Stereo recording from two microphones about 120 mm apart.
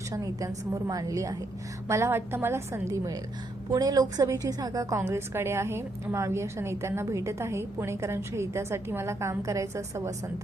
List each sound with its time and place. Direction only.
0.1 s a woman's voice: 30° right (ahead or behind)